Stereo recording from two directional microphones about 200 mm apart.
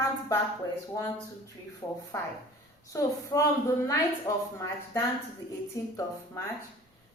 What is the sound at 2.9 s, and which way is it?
A woman's voice, 15° left (ahead or behind).